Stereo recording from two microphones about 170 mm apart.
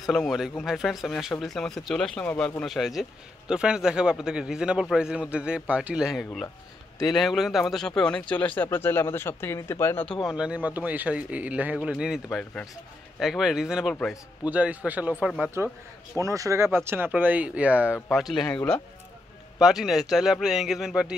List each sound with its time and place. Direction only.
0.0 s speech: centre (ahead or behind)